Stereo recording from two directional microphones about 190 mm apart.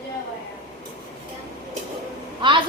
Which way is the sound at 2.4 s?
25° right (ahead or behind).